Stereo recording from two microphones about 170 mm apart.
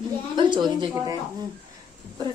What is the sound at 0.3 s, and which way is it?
A woman's voice, 25° right (ahead or behind).